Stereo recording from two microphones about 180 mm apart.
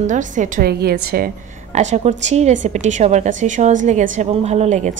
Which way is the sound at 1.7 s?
40° right (ahead or behind).